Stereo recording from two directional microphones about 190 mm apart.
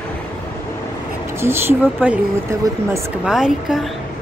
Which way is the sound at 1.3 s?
15° right (ahead or behind).